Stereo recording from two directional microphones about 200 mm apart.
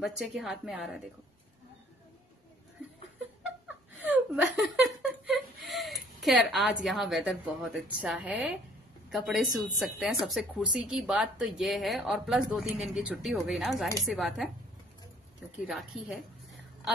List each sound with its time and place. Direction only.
0.2 s a woman's voice: centre (ahead or behind)
4.0 s laughter: 5° right (ahead or behind)
6.2 s a woman's voice: centre (ahead or behind)
15.6 s a woman's voice: centre (ahead or behind)